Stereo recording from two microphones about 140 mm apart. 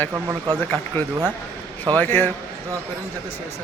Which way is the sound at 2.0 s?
15° left (ahead or behind).